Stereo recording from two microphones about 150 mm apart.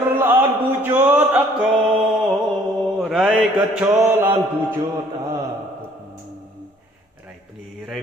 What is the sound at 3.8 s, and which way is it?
Mantra, 15° right (ahead or behind).